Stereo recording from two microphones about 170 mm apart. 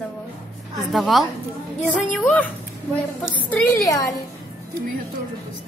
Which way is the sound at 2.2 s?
10° left (ahead or behind).